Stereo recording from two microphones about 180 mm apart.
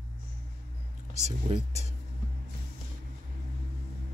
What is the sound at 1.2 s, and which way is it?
Speech, 40° right (ahead or behind).